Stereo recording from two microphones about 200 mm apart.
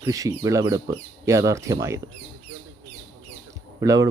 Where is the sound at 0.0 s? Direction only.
15° right (ahead or behind).